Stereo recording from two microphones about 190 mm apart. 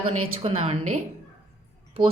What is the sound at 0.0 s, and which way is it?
A woman's voice, 30° right (ahead or behind).